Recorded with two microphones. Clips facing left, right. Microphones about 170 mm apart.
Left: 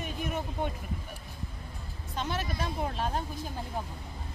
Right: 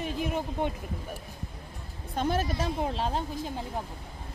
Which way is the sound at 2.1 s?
50° right (ahead or behind).